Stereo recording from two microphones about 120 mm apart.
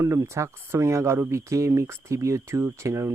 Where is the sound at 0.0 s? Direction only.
20° right (ahead or behind).